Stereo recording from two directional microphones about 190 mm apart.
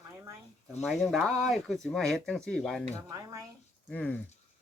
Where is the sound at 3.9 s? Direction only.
10° left (ahead or behind).